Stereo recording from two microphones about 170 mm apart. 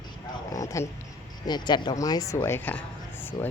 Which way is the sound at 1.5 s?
25° left (ahead or behind).